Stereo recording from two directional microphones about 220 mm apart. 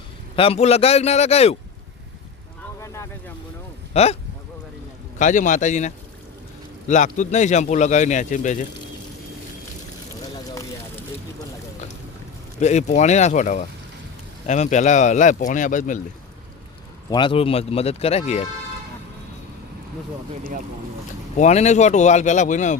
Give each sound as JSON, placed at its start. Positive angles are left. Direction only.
{"t": 0.3, "sound": "speech", "side_deg": 25}
{"t": 2.8, "sound": "vehicle", "side_deg": 15}
{"t": 3.9, "sound": "speech", "side_deg": 30}
{"t": 12.5, "sound": "speech", "side_deg": 30}
{"t": 17.1, "sound": "speech", "side_deg": 20}
{"t": 21.3, "sound": "speech", "side_deg": 30}